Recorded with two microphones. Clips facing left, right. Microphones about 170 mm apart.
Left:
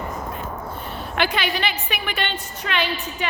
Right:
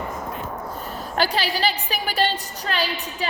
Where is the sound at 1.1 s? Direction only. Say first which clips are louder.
Even; 35° right (ahead or behind).